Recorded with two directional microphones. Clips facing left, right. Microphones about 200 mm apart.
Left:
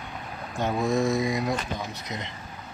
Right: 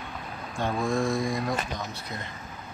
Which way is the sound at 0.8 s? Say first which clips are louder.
Left 3 dB; 20° left (ahead or behind).